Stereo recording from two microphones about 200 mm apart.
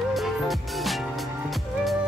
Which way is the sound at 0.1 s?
Centre (ahead or behind).